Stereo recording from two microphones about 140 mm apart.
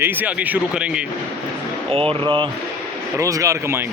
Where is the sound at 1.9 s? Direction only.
40° right (ahead or behind).